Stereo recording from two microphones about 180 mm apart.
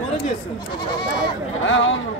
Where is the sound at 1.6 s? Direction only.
90° left.